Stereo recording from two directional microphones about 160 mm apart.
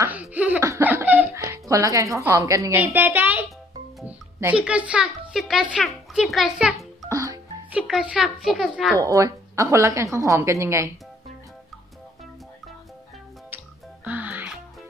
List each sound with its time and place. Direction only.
0.0 s laughter: 10° right (ahead or behind)
4.0 s a child's voice: 10° right (ahead or behind)
7.0 s music: 20° right (ahead or behind)
7.7 s a child's voice: 5° right (ahead or behind)
8.9 s a woman's voice: 20° right (ahead or behind)
14.0 s music: 10° right (ahead or behind)